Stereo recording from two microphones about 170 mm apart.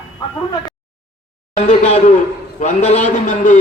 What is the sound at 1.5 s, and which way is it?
A man's voice, 40° left (ahead or behind).